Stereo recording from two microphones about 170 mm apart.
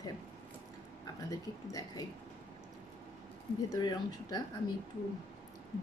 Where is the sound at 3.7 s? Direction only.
25° left (ahead or behind).